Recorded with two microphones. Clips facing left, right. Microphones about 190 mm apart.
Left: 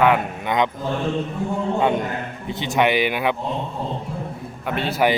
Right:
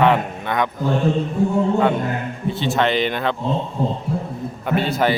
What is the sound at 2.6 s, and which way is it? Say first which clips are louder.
Speech: even; 15° left (ahead or behind).